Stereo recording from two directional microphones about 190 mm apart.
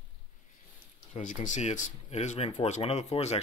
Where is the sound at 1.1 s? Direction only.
40° left (ahead or behind).